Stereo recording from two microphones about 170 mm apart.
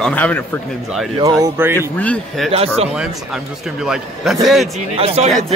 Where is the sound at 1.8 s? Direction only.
10° left (ahead or behind).